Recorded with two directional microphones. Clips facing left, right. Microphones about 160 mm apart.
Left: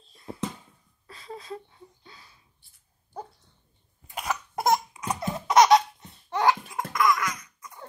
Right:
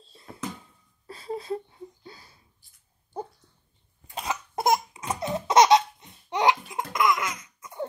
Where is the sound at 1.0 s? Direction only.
30° right (ahead or behind).